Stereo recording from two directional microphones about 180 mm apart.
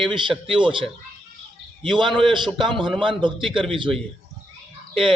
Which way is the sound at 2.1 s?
25° right (ahead or behind).